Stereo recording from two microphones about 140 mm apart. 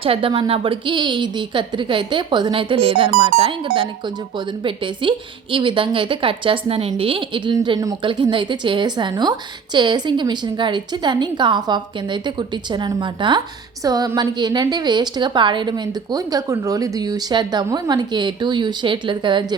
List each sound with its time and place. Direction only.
0.0 s a woman's voice: 40° right (ahead or behind)